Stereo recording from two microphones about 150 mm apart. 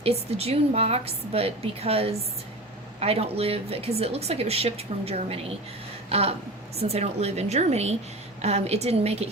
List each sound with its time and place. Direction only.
0.0 s a woman's voice: 40° right (ahead or behind)
6.1 s a sound: 40° right (ahead or behind)
6.7 s a woman's voice: 45° right (ahead or behind)